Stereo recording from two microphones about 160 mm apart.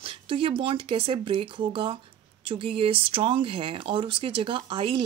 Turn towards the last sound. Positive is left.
turn(degrees=-30)  # may be behind; listen again after turning